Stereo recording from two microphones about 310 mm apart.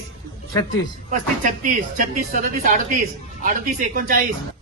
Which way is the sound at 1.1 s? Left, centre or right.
Right.